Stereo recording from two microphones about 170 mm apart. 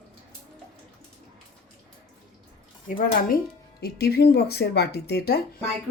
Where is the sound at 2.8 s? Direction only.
55° left (ahead or behind).